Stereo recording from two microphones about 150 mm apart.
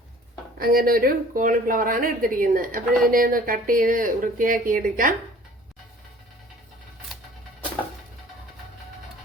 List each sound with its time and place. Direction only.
0.6 s a woman's voice: 80° right; by 5.1 s 65° right (ahead or behind)